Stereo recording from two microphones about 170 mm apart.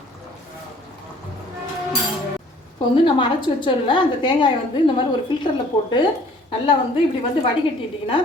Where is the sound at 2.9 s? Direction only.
30° left (ahead or behind).